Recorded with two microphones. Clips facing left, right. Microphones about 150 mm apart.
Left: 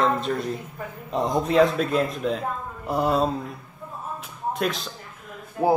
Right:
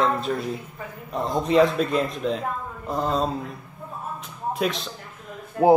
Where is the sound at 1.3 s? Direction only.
Centre (ahead or behind).